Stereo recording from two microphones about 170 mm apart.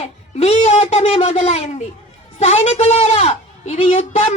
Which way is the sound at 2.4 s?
40° left (ahead or behind).